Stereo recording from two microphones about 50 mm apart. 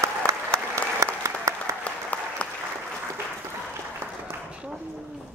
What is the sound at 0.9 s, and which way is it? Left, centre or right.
Applause, right.